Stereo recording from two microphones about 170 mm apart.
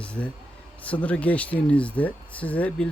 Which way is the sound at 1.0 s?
10° left (ahead or behind).